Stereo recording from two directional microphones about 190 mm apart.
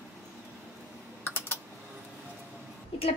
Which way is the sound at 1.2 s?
10° left (ahead or behind).